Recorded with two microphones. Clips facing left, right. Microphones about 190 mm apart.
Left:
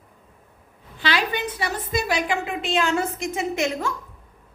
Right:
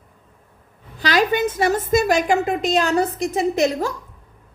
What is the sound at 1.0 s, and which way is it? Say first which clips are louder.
A woman's voice: right 6 dB; 40° right (ahead or behind).